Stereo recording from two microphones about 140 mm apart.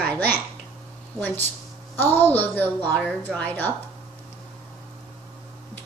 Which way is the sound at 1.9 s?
15° left (ahead or behind).